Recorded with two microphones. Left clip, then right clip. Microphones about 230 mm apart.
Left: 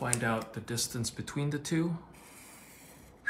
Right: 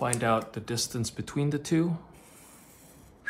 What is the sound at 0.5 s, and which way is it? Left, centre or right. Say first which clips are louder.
Speech: right 4 dB; right.